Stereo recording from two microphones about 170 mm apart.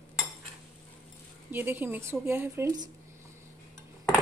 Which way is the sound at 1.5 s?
10° right (ahead or behind).